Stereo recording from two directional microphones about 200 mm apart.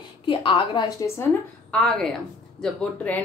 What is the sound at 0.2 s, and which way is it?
A woman's voice, 25° left (ahead or behind).